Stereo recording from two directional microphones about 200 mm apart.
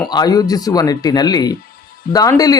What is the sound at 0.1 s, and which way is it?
A man's voice, 20° left (ahead or behind).